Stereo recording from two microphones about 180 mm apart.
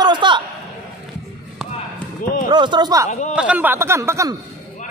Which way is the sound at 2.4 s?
25° right (ahead or behind).